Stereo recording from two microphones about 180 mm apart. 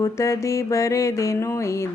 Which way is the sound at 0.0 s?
15° left (ahead or behind).